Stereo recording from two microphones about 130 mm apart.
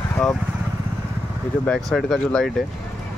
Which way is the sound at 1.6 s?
Centre (ahead or behind).